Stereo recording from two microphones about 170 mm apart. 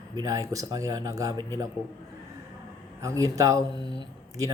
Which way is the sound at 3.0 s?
20° right (ahead or behind).